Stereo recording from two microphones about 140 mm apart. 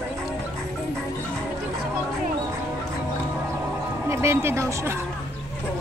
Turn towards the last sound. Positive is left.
turn(degrees=-20)  # may be behind; listen again after turning